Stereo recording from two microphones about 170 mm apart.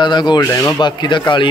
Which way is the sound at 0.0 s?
25° left (ahead or behind).